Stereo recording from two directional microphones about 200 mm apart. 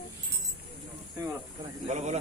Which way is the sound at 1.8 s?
35° right (ahead or behind).